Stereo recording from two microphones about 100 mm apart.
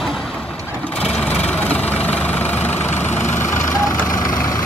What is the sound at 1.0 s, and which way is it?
Vehicle, 10° left (ahead or behind).